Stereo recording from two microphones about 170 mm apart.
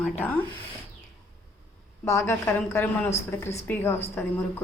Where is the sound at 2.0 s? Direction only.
15° left (ahead or behind).